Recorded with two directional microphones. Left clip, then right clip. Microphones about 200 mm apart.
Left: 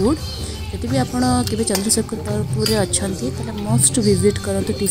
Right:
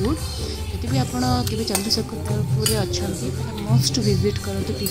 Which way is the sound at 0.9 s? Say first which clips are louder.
Left 4 dB; 20° left (ahead or behind).